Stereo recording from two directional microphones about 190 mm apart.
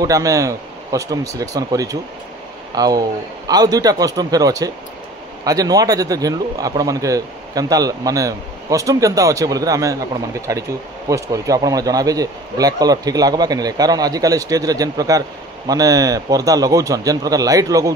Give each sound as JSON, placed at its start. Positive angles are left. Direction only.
{"t": 0.0, "sound": "speech", "side_deg": -15}